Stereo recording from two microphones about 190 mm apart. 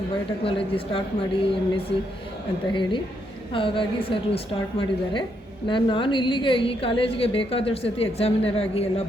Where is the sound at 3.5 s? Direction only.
25° left (ahead or behind).